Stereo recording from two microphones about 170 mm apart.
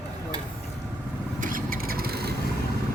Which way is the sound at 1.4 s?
55° right (ahead or behind).